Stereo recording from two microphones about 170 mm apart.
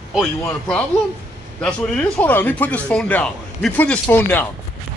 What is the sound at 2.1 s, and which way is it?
Speech, 10° left (ahead or behind).